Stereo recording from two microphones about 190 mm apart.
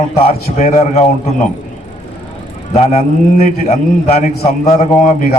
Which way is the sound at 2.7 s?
35° left (ahead or behind).